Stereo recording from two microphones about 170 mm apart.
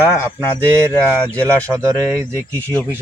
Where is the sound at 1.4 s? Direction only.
15° right (ahead or behind).